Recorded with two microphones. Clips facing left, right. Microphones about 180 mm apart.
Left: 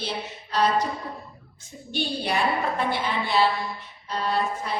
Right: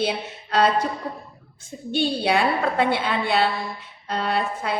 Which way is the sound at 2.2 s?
70° right (ahead or behind).